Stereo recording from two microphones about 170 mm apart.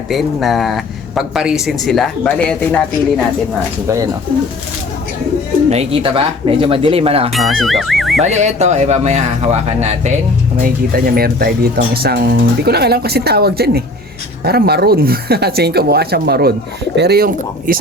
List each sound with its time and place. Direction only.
0.1 s speech: centre (ahead or behind)
3.8 s speech: 20° right (ahead or behind)
5.7 s speech: 35° right (ahead or behind)
7.3 s speech: centre (ahead or behind)
8.2 s speech: 40° right (ahead or behind)
10.6 s speech: 60° right (ahead or behind)